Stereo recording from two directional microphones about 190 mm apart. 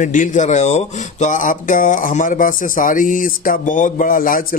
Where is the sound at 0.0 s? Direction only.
40° left (ahead or behind).